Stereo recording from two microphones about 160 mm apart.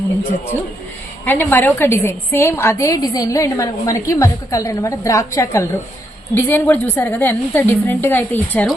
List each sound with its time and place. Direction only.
1.2 s a woman's voice: 10° left (ahead or behind)